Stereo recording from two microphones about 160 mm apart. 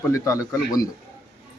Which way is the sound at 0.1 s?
20° left (ahead or behind).